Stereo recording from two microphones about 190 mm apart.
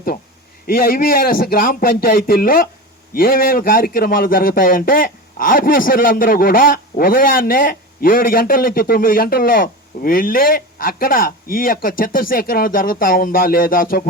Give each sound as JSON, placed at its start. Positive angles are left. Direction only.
{"t": 0.7, "sound": "speech", "side_deg": 50}